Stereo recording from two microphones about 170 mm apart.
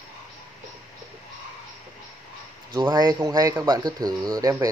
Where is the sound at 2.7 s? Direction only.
25° right (ahead or behind).